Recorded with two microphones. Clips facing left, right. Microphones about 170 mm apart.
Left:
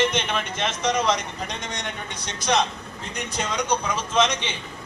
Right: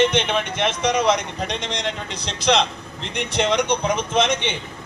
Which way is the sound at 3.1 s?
75° right (ahead or behind).